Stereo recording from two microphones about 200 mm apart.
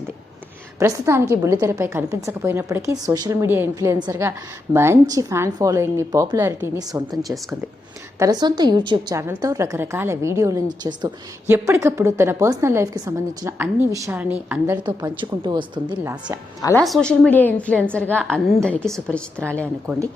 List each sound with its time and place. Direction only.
0.8 s a woman's voice: 15° right (ahead or behind)
8.2 s a woman's voice: 20° right (ahead or behind)
14.8 s a woman's voice: 25° right (ahead or behind)
16.6 s a woman's voice: 15° left (ahead or behind)
16.8 s a woman's voice: centre (ahead or behind)